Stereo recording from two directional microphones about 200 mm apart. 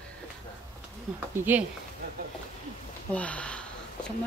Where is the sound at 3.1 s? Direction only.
5° left (ahead or behind).